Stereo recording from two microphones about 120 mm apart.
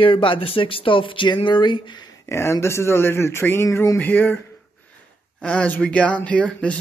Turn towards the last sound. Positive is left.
turn(degrees=10)  # may be behind; listen again after turning